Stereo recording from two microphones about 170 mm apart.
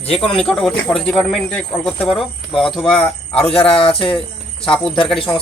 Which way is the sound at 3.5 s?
30° left (ahead or behind).